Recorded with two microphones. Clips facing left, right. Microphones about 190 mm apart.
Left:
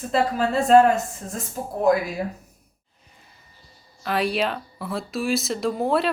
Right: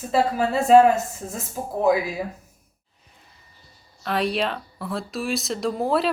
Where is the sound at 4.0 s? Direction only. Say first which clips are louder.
Even; centre (ahead or behind).